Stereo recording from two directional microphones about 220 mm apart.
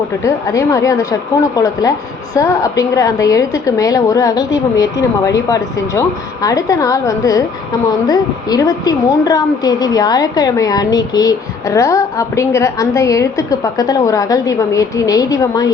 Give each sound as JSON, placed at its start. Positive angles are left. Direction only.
{"t": 0.3, "sound": "a woman's voice", "side_deg": 15}